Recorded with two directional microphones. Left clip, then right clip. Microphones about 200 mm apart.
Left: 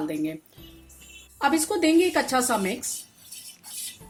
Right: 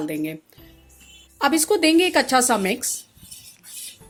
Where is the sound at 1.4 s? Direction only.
40° right (ahead or behind).